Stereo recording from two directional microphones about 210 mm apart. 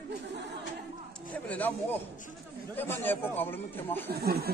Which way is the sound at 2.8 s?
10° left (ahead or behind).